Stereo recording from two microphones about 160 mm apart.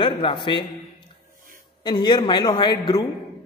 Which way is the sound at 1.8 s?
25° left (ahead or behind).